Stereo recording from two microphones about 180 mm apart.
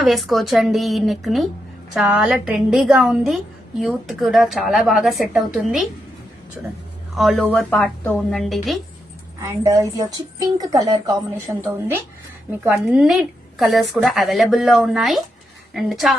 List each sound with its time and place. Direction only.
0.0 s a woman's voice: centre (ahead or behind)
7.2 s a woman's voice: centre (ahead or behind)
9.4 s a woman's voice: 20° right (ahead or behind); by 16.1 s centre (ahead or behind)